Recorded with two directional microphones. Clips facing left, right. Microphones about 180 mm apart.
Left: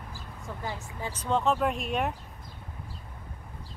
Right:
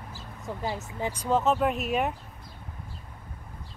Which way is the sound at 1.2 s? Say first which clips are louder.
Right 2 dB; 5° right (ahead or behind).